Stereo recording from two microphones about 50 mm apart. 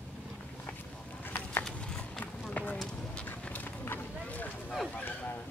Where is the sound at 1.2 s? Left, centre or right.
Left.